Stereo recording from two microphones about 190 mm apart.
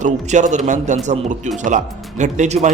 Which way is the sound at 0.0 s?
40° right (ahead or behind).